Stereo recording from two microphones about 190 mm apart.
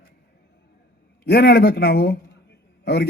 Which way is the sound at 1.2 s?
55° left (ahead or behind).